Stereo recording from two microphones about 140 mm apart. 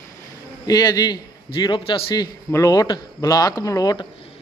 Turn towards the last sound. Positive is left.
turn(degrees=25)  # may be behind; listen again after turning